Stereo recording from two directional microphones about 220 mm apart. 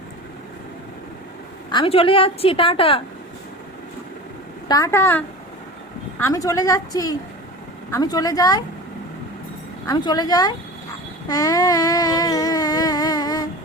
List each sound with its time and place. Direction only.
1.7 s a woman's voice: 25° left (ahead or behind)
4.7 s a woman's voice: 15° left (ahead or behind)
9.8 s a woman's voice: 15° left (ahead or behind)
11.3 s a sound: 15° left (ahead or behind)